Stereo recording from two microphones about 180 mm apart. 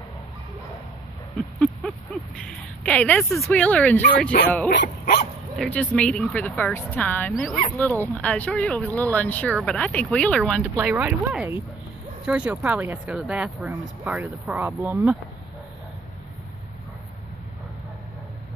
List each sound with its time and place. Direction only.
1.3 s speech: 5° left (ahead or behind)
4.3 s speech: 60° left (ahead or behind)
5.6 s speech: 5° left (ahead or behind)
10.8 s speech: 10° right (ahead or behind)